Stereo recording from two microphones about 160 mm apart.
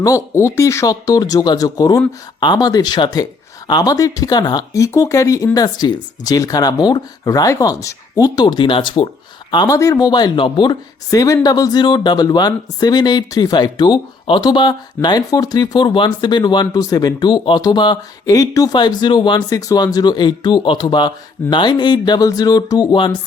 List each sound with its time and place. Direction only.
0.0 s speech: 20° left (ahead or behind)